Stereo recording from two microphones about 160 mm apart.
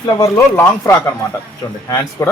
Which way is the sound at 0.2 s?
15° left (ahead or behind).